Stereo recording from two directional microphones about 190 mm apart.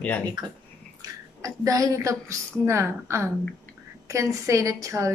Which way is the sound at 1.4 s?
15° right (ahead or behind).